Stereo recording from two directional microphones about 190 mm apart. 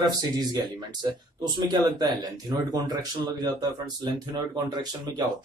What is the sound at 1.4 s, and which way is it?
Speech, 20° right (ahead or behind).